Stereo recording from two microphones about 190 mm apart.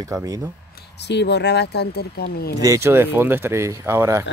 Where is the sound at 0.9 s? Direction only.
65° left (ahead or behind).